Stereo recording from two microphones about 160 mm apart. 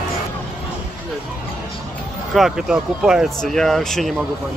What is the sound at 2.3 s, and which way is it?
Speech, 5° right (ahead or behind).